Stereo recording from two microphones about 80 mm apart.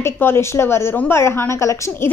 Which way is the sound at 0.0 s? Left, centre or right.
Left.